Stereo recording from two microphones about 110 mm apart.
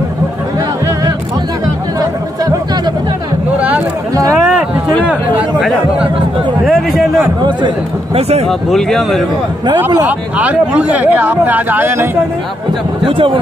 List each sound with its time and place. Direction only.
3.5 s a sound: 10° right (ahead or behind)
5.6 s speech: centre (ahead or behind)
7.4 s speech: 45° right (ahead or behind)
8.2 s speech: 70° right (ahead or behind)
8.5 s speech: 5° left (ahead or behind)
10.0 s speech: 15° right (ahead or behind)
13.0 s speech: 50° right (ahead or behind)